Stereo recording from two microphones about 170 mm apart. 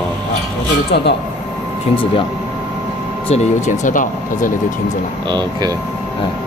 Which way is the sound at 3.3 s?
45° left (ahead or behind).